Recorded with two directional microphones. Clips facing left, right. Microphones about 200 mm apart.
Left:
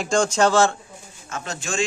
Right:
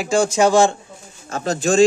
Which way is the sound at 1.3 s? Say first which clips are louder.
Right 11 dB; 35° right (ahead or behind).